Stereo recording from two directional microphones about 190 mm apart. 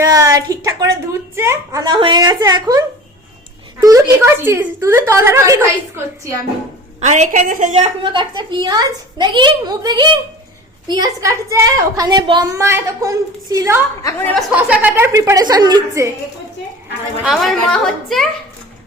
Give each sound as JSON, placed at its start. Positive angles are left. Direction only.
{"t": 0.1, "sound": "a woman's voice", "side_deg": -15}
{"t": 7.0, "sound": "a woman's voice", "side_deg": -40}
{"t": 14.0, "sound": "speech", "side_deg": 15}
{"t": 14.3, "sound": "a woman's voice", "side_deg": -5}
{"t": 17.2, "sound": "a woman's voice", "side_deg": 0}